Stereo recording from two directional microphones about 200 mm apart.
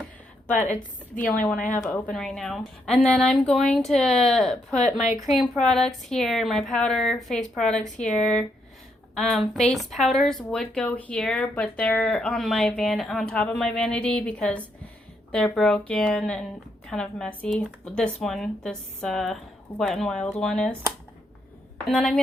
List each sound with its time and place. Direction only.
0.5 s a woman's voice: 40° left (ahead or behind)
1.1 s speech: 5° left (ahead or behind)
21.8 s speech: centre (ahead or behind)